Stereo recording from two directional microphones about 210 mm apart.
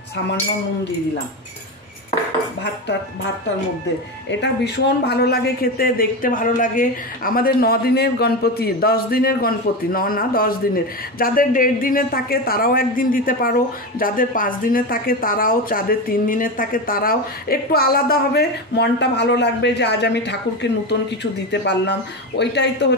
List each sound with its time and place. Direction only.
4.3 s speech: 55° left (ahead or behind)